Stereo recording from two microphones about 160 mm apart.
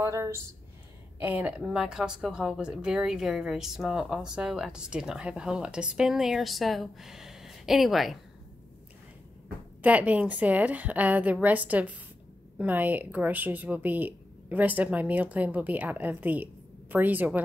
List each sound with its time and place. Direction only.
0.0 s speech: 15° right (ahead or behind); by 8.2 s centre (ahead or behind)
9.8 s speech: 10° right (ahead or behind)